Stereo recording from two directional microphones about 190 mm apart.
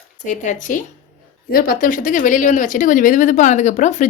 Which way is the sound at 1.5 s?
50° left (ahead or behind).